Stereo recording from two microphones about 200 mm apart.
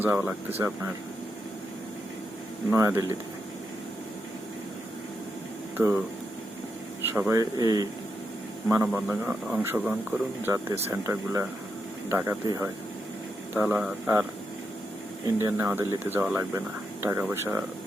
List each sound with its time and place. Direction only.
0.0 s speech: 10° right (ahead or behind)
2.7 s speech: 15° right (ahead or behind)
5.7 s speech: 10° right (ahead or behind)
7.1 s speech: 10° right (ahead or behind)
8.7 s speech: 5° right (ahead or behind)
15.4 s speech: 15° right (ahead or behind)